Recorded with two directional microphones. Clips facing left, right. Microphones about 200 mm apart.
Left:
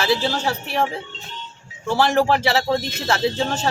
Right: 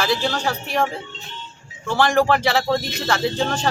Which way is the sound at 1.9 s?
5° left (ahead or behind).